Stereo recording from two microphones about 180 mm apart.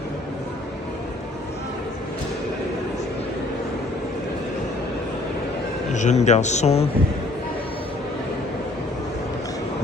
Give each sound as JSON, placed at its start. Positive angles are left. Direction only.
{"t": 5.9, "sound": "speech", "side_deg": 40}